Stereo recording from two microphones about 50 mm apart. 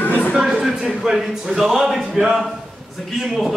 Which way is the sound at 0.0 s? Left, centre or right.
Left.